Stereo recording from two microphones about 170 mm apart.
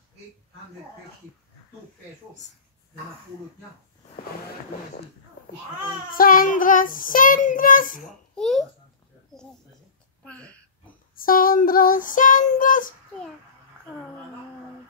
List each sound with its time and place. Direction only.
6.1 s child singing: 55° left (ahead or behind)
8.4 s a child's voice: centre (ahead or behind)
9.3 s a sound: 5° left (ahead or behind)
10.2 s speech: 5° left (ahead or behind)
11.1 s child singing: 55° left (ahead or behind)